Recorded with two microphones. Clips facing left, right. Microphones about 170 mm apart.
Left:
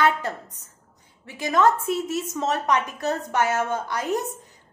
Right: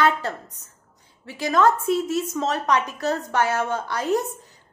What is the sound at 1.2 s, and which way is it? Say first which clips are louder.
A woman's voice: right 1 dB; 20° left (ahead or behind).